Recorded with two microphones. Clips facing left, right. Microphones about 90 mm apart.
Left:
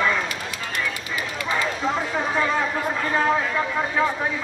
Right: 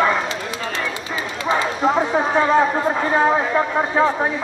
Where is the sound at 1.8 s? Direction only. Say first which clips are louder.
Right 6 dB; 35° right (ahead or behind).